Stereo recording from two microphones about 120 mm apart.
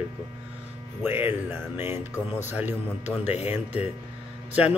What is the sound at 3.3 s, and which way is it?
Speech, 60° left (ahead or behind).